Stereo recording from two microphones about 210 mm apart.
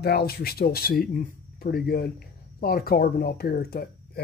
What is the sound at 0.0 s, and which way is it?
Speech, 50° left (ahead or behind).